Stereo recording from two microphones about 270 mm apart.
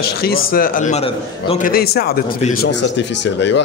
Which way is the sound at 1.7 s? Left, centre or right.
Left.